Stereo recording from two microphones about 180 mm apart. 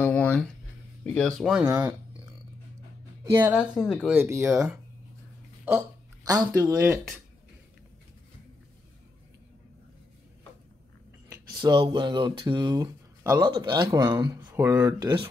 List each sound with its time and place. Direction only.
0.0 s a sound: 10° left (ahead or behind)
1.0 s speech: 5° left (ahead or behind)
1.7 s speech: 15° right (ahead or behind)
3.5 s speech: 10° left (ahead or behind)
4.0 s speech: 10° right (ahead or behind)
11.2 s speech: 25° right (ahead or behind)